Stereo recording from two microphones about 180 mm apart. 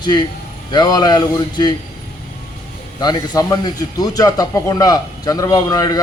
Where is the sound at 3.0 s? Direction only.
20° left (ahead or behind).